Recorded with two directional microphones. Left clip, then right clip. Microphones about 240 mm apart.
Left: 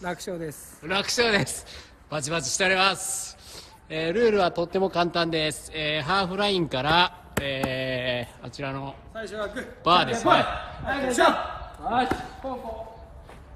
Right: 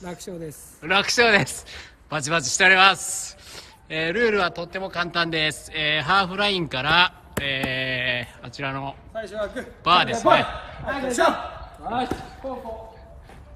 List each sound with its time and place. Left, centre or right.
0.0 s a man's voice: centre
0.5 s speech: centre
9.1 s a man's voice: right
9.8 s a man's voice: centre
10.9 s a man's voice: centre
11.8 s speech: centre
12.4 s a man's voice: centre